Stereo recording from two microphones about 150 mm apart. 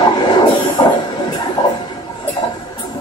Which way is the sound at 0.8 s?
30° left (ahead or behind).